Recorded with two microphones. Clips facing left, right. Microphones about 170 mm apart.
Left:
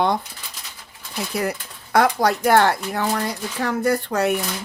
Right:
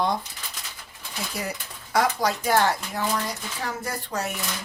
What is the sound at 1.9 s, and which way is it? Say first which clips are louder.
Speech: left 5 dB; 60° left (ahead or behind).